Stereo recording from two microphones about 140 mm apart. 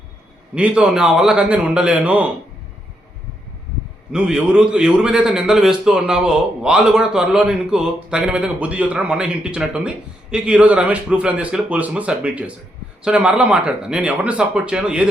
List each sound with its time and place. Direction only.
0.5 s a man's voice: 5° right (ahead or behind)
4.1 s a man's voice: 5° right (ahead or behind)